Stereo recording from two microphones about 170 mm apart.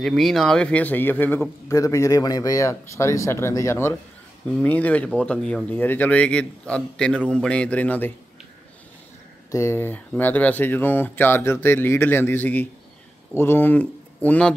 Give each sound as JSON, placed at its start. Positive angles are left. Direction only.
{"t": 0.0, "sound": "a man's voice", "side_deg": 0}
{"t": 9.5, "sound": "a man's voice", "side_deg": 15}